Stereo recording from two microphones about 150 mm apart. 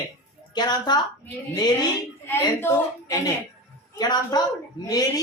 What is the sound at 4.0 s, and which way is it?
Speech, 25° left (ahead or behind).